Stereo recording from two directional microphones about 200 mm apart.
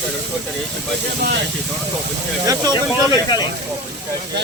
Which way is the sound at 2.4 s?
20° right (ahead or behind).